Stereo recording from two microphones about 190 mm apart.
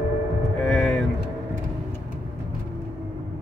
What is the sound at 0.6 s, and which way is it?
Vehicle, centre (ahead or behind).